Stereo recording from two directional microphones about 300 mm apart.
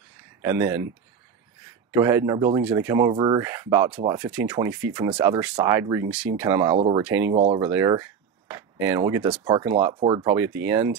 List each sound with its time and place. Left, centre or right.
0.4 s speech: centre
1.9 s speech: centre
4.2 s speech: centre
7.3 s speech: centre